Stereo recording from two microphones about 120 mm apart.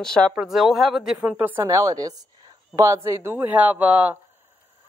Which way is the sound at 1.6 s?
25° right (ahead or behind).